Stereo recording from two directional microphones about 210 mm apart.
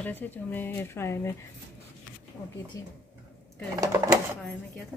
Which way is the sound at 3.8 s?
15° right (ahead or behind).